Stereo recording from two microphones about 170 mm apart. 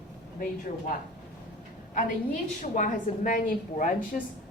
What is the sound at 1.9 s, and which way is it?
A woman's voice, 50° left (ahead or behind).